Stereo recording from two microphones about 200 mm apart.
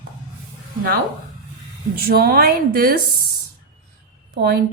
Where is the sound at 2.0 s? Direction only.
50° right (ahead or behind).